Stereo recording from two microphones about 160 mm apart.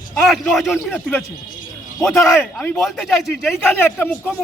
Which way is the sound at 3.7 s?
15° left (ahead or behind).